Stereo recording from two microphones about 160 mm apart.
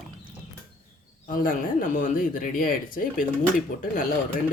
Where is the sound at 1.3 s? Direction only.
60° left (ahead or behind).